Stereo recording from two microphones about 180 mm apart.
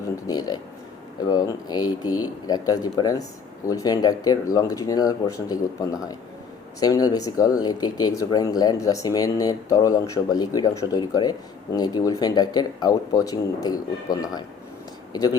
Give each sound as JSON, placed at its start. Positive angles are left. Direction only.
{"t": 0.3, "sound": "speech", "side_deg": 20}